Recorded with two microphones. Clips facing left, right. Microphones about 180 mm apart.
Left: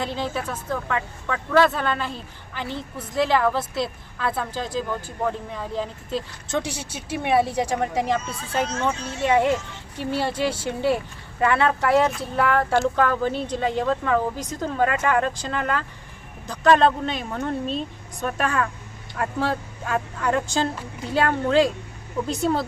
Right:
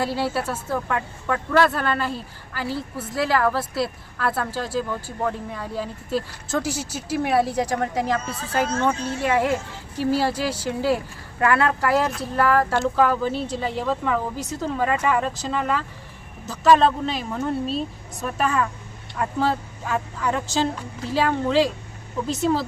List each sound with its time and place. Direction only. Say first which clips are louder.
0.0 s speech: right 3 dB; 5° right (ahead or behind)
8.2 s speech: right 2 dB; 50° right (ahead or behind)
9.2 s speech: left 2 dB; 5° right (ahead or behind)